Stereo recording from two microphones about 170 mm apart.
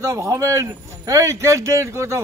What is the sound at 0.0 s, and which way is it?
Speech, 15° right (ahead or behind).